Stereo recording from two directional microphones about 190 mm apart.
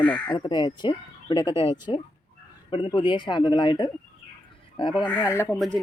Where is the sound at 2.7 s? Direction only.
25° left (ahead or behind).